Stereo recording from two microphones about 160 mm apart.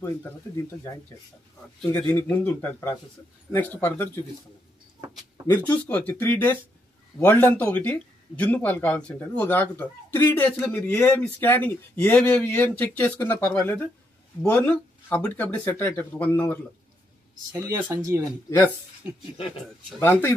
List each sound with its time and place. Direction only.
2.0 s speech: 10° left (ahead or behind)
5.5 s speech: 10° left (ahead or behind)
17.5 s speech: 15° right (ahead or behind)
20.0 s speech: 15° left (ahead or behind)